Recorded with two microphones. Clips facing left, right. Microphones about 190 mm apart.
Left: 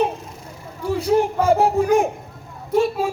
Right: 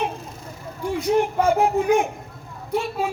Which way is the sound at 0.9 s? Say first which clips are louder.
Left 2 dB; 35° left (ahead or behind).